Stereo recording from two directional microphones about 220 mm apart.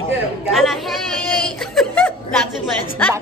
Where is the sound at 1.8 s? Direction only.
5° left (ahead or behind).